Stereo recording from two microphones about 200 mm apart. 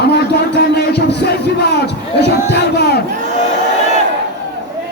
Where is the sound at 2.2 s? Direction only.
55° left (ahead or behind).